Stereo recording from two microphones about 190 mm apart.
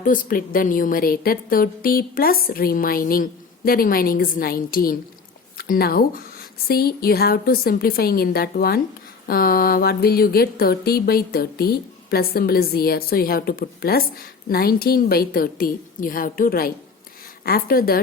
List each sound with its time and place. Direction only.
0.0 s a woman's voice: 45° left (ahead or behind)